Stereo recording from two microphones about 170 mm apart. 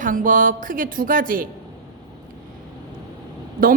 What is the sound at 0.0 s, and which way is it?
A woman's voice, 50° right (ahead or behind).